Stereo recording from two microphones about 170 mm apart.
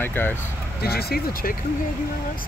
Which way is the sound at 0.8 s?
65° left (ahead or behind).